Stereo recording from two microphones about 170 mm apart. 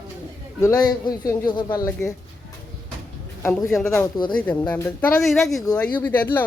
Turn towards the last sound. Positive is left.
turn(degrees=10)  # may be behind; listen again after turning